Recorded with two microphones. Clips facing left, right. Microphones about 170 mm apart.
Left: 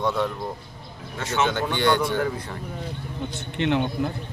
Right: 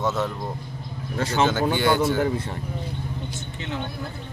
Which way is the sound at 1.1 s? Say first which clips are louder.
Right 3 dB; 35° right (ahead or behind).